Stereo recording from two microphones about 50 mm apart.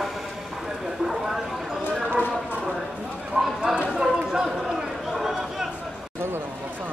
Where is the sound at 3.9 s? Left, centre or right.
Centre.